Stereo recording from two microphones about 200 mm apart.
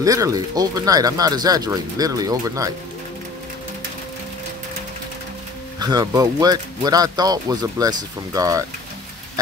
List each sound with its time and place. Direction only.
0.0 s speech: 15° right (ahead or behind)
5.8 s speech: 20° right (ahead or behind)